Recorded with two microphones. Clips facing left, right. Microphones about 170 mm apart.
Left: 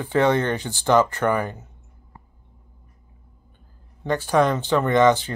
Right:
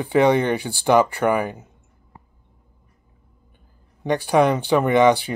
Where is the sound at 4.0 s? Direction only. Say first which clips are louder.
Right 2 dB; 15° right (ahead or behind).